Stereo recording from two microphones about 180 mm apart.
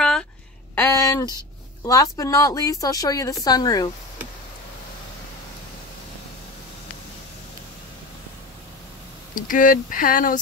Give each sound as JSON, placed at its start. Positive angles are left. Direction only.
{"t": 0.7, "sound": "speech", "side_deg": 15}
{"t": 9.3, "sound": "speech", "side_deg": 50}